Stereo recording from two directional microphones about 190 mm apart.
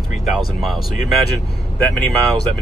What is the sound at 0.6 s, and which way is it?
Speech, centre (ahead or behind).